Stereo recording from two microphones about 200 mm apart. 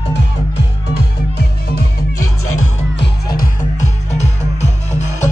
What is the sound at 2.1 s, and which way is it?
Music, 90° left.